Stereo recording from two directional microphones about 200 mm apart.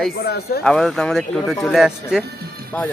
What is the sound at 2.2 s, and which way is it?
Speech, 50° right (ahead or behind).